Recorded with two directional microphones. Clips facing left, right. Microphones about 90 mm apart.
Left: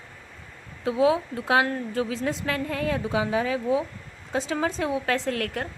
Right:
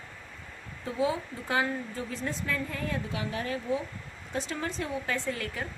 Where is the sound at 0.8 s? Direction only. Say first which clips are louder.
Left 8 dB; 85° left.